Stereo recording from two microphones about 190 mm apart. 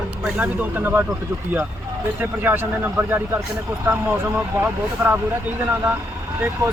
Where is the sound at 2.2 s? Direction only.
10° right (ahead or behind).